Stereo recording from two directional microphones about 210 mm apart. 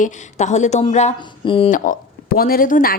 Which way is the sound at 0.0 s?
35° left (ahead or behind).